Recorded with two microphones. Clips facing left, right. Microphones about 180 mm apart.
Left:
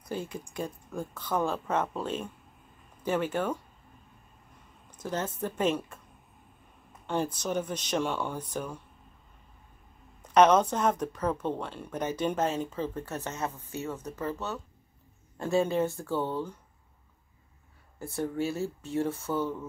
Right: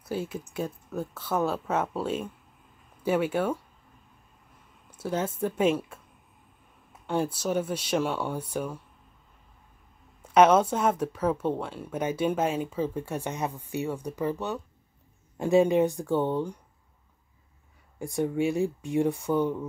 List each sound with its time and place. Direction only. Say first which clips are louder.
0.0 s speech: right 3 dB; 5° right (ahead or behind)
4.9 s speech: right 4 dB; 10° right (ahead or behind)
10.2 s speech: right 2 dB; 10° right (ahead or behind)
17.9 s speech: right 4 dB; 15° right (ahead or behind)